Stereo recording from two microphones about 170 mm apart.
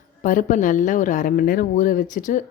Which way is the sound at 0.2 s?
50° left (ahead or behind).